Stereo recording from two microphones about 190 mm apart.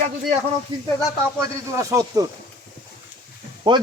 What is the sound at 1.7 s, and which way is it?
Speech, 15° right (ahead or behind).